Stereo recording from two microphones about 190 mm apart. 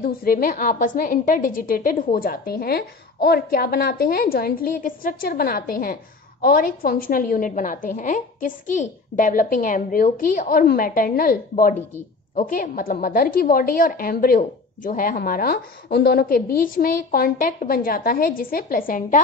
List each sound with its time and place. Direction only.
0.0 s a woman's voice: 50° left (ahead or behind)